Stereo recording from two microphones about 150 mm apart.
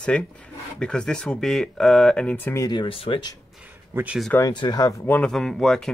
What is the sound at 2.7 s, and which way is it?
Speech, 35° left (ahead or behind).